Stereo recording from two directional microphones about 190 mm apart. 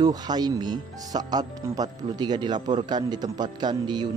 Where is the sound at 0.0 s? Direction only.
20° right (ahead or behind).